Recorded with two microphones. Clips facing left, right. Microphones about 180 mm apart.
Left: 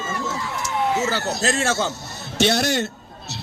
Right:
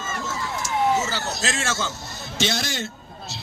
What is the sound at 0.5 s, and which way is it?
Emergency vehicle, 60° left (ahead or behind).